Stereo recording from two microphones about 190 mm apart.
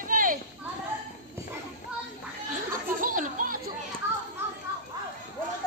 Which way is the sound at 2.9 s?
45° right (ahead or behind).